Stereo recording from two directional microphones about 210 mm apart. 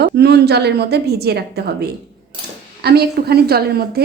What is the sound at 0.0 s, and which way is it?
A woman's voice, 50° right (ahead or behind).